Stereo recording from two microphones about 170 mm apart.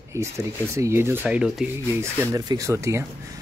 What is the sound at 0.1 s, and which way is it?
Speech, 15° right (ahead or behind).